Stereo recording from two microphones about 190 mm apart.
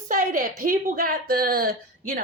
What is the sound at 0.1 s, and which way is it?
A woman's voice, 45° right (ahead or behind).